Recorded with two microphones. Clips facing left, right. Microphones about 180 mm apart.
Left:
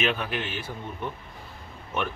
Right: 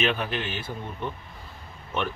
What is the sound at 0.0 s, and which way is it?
Speech, 10° left (ahead or behind).